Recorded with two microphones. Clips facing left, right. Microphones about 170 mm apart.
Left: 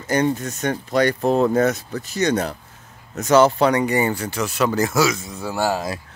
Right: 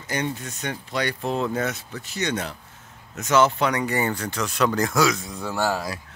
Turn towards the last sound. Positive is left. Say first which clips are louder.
# left 3 dB
turn(degrees=20)  # may be behind; listen again after turning